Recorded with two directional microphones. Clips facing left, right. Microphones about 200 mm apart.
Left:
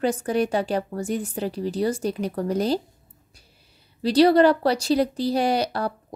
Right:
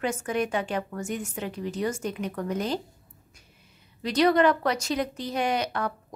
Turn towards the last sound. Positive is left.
turn(degrees=35)  # may be behind; listen again after turning